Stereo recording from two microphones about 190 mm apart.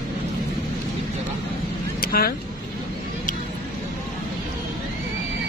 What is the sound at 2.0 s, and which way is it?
Vehicle, 50° left (ahead or behind).